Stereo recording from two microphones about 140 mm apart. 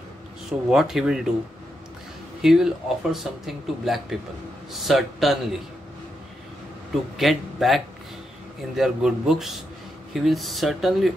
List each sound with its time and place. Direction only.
0.5 s speech: 5° right (ahead or behind)
2.4 s speech: 5° right (ahead or behind)
6.9 s speech: centre (ahead or behind)